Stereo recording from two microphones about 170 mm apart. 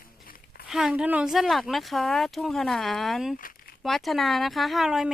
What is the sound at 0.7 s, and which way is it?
Speech, 5° right (ahead or behind).